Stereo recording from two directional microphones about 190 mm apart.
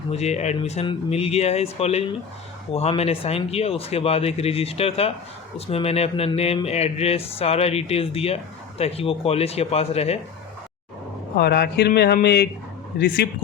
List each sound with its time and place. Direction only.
0.1 s speech: 35° left (ahead or behind)
11.3 s a man's voice: 55° left (ahead or behind)